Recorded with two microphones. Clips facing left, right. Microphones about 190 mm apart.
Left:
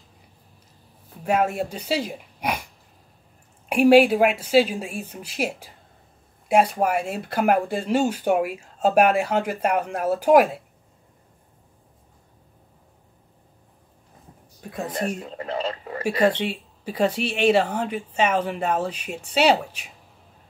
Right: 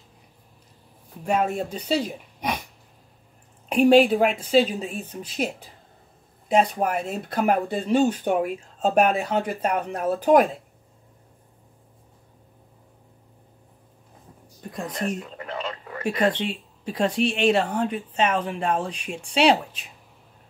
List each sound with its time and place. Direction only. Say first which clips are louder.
1.2 s speech: left 1 dB; 10° left (ahead or behind)
3.6 s speech: left 1 dB; 10° left (ahead or behind)
15.0 s radio: left 1 dB; 30° left (ahead or behind)
16.0 s speech: left 2 dB; 5° left (ahead or behind)